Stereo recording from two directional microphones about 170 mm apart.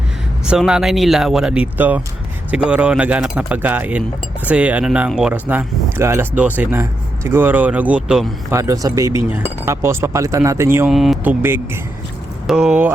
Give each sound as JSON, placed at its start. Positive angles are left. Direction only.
{"t": 0.4, "sound": "speech", "side_deg": -5}
{"t": 8.5, "sound": "speech", "side_deg": -20}
{"t": 10.9, "sound": "speech", "side_deg": 0}